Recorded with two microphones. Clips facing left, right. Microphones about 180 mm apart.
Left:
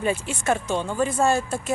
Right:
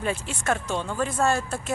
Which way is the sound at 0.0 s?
5° left (ahead or behind).